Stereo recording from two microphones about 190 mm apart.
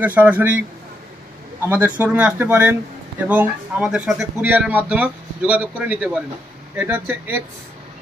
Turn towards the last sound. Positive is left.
turn(degrees=-10)  # may be behind; listen again after turning